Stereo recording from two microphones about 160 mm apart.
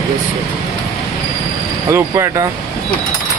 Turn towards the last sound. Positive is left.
turn(degrees=-20)  # may be behind; listen again after turning